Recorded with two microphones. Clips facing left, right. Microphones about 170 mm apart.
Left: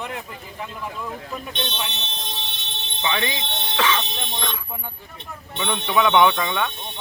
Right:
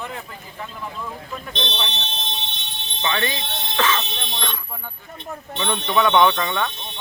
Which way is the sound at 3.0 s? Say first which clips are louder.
Right 1 dB; 10° left (ahead or behind).